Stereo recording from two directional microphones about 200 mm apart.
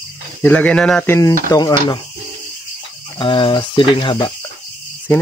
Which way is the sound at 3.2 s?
25° left (ahead or behind).